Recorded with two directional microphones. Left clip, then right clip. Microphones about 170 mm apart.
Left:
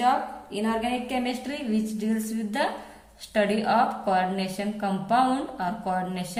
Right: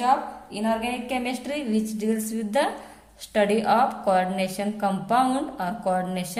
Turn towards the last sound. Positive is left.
turn(degrees=-35)  # may be behind; listen again after turning